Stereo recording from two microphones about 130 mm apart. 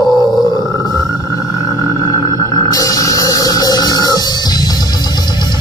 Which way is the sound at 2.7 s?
25° left (ahead or behind).